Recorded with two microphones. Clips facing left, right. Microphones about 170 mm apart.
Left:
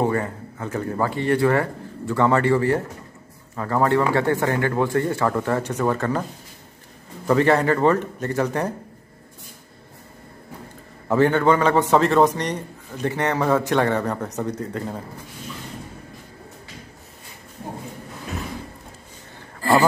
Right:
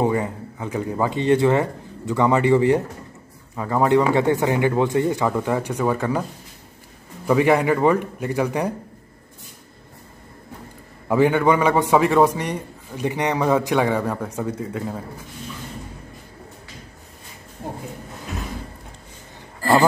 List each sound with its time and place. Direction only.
0.0 s a man's voice: 15° right (ahead or behind)
7.2 s a man's voice: 10° right (ahead or behind)
11.1 s a man's voice: 10° right (ahead or behind)